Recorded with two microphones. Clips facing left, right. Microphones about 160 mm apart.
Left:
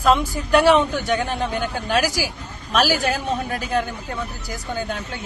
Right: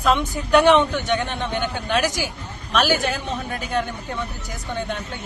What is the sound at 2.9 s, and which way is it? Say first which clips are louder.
Speech: left 1 dB; 40° left (ahead or behind).